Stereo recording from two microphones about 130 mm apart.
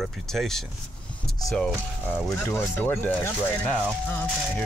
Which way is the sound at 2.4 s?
15° left (ahead or behind).